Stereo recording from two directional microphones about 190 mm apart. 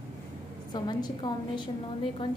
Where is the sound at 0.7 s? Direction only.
20° left (ahead or behind).